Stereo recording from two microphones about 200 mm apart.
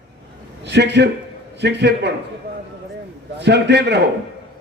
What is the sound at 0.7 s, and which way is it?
A man's voice, 60° right (ahead or behind).